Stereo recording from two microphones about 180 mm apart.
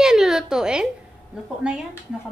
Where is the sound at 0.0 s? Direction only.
5° right (ahead or behind).